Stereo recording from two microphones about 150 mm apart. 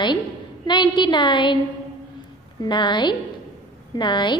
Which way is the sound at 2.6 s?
30° left (ahead or behind).